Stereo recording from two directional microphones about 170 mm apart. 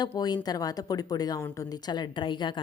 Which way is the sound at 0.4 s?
20° left (ahead or behind).